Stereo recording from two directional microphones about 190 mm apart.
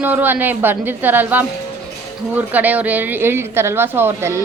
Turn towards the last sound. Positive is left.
turn(degrees=-15)  # may be behind; listen again after turning